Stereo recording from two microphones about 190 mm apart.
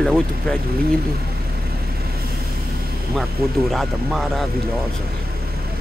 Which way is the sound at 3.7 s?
Centre (ahead or behind).